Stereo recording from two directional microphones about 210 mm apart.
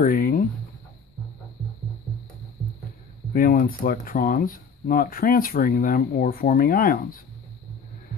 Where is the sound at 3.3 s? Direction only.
45° left (ahead or behind).